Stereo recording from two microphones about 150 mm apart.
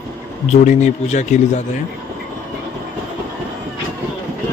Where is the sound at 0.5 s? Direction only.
55° left (ahead or behind).